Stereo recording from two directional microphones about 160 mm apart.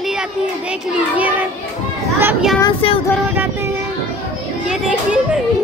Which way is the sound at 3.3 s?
10° right (ahead or behind).